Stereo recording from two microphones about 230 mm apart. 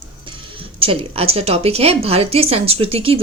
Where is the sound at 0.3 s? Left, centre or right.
Right.